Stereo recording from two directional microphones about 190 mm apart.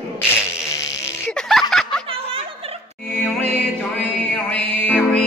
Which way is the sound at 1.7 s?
Centre (ahead or behind).